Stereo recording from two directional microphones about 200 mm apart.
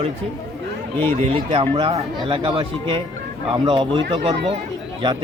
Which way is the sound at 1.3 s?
30° right (ahead or behind).